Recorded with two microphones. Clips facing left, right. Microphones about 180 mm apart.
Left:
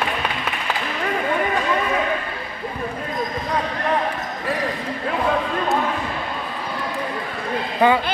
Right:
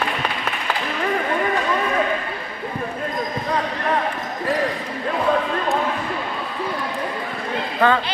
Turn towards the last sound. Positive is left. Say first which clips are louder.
# left 1 dB
turn(degrees=15)  # may be behind; listen again after turning